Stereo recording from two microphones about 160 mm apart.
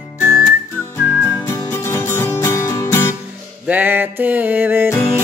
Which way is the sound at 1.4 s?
15° left (ahead or behind).